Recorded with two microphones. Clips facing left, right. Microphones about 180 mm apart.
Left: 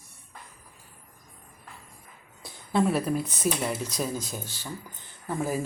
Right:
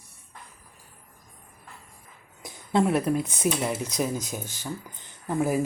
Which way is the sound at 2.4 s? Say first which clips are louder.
Right 1 dB; 20° right (ahead or behind).